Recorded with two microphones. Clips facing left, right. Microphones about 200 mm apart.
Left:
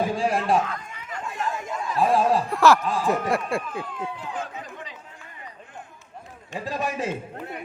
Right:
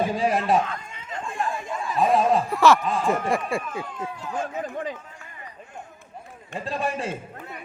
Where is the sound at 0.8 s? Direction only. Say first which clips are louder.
Right 1 dB; 25° right (ahead or behind).